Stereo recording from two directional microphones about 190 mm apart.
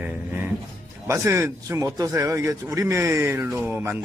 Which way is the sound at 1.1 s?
15° right (ahead or behind).